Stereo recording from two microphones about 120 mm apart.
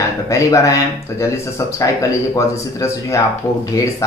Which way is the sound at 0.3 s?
25° left (ahead or behind).